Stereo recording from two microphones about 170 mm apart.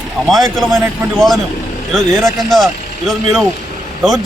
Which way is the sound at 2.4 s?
Centre (ahead or behind).